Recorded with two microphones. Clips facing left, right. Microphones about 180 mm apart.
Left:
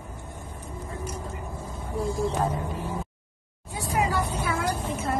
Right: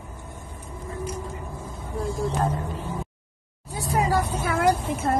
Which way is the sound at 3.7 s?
40° right (ahead or behind).